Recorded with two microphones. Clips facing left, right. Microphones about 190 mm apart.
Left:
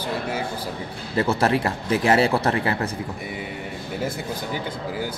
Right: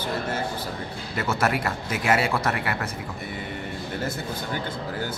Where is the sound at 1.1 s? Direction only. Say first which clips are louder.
Left 5 dB; 30° left (ahead or behind).